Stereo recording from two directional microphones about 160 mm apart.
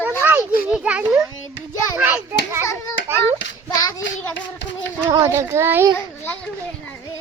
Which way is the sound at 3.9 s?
20° left (ahead or behind).